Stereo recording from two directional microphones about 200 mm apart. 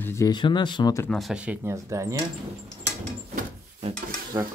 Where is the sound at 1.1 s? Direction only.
Centre (ahead or behind).